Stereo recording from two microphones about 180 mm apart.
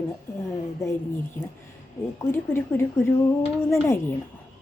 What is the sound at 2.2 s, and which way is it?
Speech, 15° left (ahead or behind).